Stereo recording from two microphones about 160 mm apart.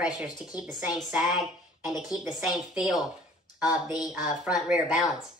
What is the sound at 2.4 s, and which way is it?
A woman's voice, centre (ahead or behind).